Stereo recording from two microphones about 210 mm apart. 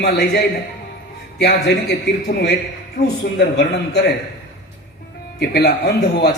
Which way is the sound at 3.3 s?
50° left (ahead or behind).